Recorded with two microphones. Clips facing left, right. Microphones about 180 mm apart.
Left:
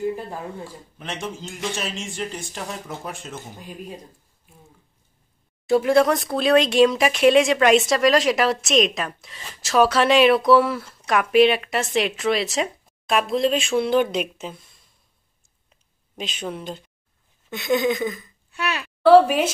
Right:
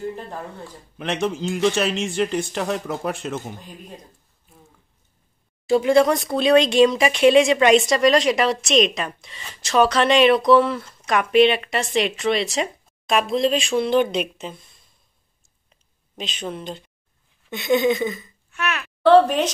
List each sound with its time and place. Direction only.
0.0 s speech: 10° left (ahead or behind)
0.9 s a man's voice: 70° right (ahead or behind)
5.7 s speech: centre (ahead or behind)
15.7 s a sound: 10° left (ahead or behind)
17.5 s speech: centre (ahead or behind)
18.5 s a sound: 30° left (ahead or behind)
18.8 s a woman's voice: 10° left (ahead or behind)